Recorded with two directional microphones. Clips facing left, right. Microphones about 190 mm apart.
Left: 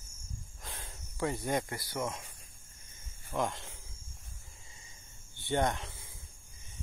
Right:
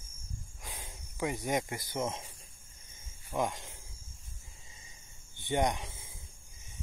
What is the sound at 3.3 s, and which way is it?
Speech, 15° right (ahead or behind).